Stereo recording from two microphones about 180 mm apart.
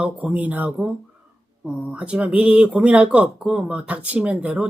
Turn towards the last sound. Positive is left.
turn(degrees=-5)  # may be behind; listen again after turning